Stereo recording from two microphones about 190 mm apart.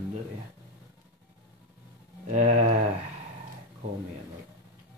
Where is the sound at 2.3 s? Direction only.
35° right (ahead or behind).